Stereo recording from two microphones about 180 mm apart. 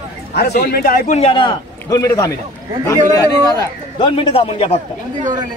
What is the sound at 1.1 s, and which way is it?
A man's voice, 30° left (ahead or behind).